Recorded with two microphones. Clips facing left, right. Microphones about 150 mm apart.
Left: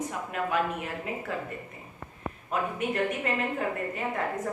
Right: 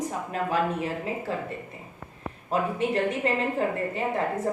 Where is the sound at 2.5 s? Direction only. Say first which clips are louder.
Right 4 dB; 30° right (ahead or behind).